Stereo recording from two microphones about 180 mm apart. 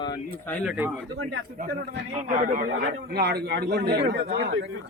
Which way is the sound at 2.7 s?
65° right (ahead or behind).